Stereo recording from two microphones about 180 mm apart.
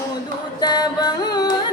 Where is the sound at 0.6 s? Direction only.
20° left (ahead or behind).